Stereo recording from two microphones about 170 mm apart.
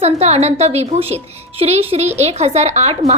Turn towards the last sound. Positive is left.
turn(degrees=-40)  # may be behind; listen again after turning